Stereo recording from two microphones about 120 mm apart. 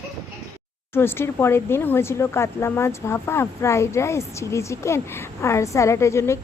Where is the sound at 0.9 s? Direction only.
20° left (ahead or behind).